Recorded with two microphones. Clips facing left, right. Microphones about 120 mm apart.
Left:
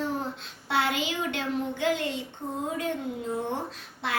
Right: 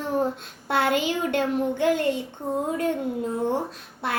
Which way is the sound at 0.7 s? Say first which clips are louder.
Right 5 dB; 50° right (ahead or behind).